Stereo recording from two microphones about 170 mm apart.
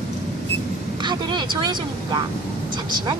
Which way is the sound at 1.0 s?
25° right (ahead or behind).